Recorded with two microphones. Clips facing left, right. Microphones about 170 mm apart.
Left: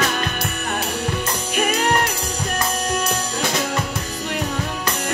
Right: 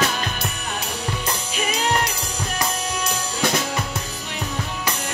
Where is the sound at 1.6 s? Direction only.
55° left (ahead or behind).